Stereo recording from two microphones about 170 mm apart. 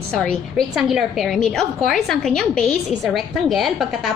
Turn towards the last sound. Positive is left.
turn(degrees=0)  # may be behind; listen again after turning